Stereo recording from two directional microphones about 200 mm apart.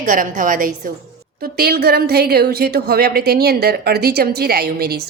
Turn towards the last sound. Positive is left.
turn(degrees=-50)  # may be behind; listen again after turning